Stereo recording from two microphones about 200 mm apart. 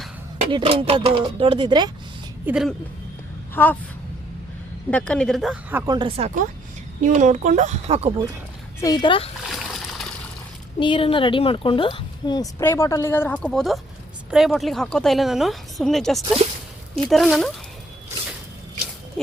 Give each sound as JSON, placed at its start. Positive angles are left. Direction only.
{"t": 0.5, "sound": "speech", "side_deg": -30}
{"t": 2.5, "sound": "speech", "side_deg": 0}
{"t": 3.5, "sound": "speech", "side_deg": 10}
{"t": 4.9, "sound": "speech", "side_deg": 5}
{"t": 5.8, "sound": "speech", "side_deg": -20}
{"t": 8.8, "sound": "speech", "side_deg": 20}
{"t": 9.5, "sound": "splash", "side_deg": 0}
{"t": 10.8, "sound": "speech", "side_deg": 25}